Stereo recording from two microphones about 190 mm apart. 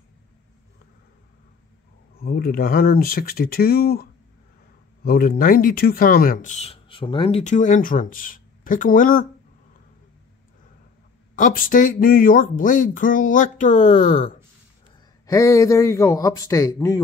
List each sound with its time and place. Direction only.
2.1 s speech: 50° left (ahead or behind)
11.3 s speech: 45° left (ahead or behind)
15.2 s a man's voice: 15° left (ahead or behind)